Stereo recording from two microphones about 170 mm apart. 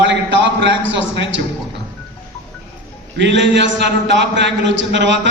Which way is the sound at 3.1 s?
90° right.